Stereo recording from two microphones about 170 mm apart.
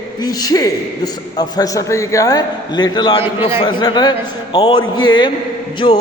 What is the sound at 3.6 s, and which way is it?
A man's voice, 25° left (ahead or behind).